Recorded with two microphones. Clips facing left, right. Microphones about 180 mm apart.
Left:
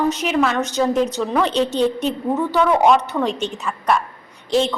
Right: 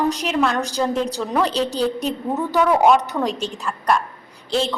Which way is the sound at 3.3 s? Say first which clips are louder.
Left 2 dB; 35° right (ahead or behind).